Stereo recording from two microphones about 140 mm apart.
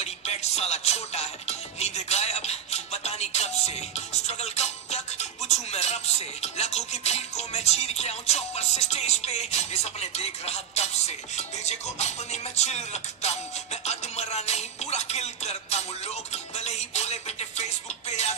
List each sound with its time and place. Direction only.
0.0 s music: 50° left (ahead or behind)